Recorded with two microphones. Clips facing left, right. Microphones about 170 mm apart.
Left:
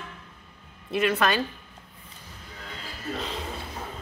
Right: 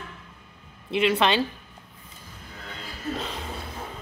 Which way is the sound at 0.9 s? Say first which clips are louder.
Right 2 dB; 20° right (ahead or behind).